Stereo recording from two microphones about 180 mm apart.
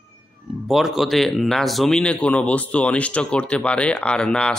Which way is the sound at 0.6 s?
Centre (ahead or behind).